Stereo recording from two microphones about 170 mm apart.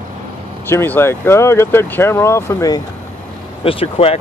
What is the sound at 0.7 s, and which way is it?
Speech, 15° left (ahead or behind).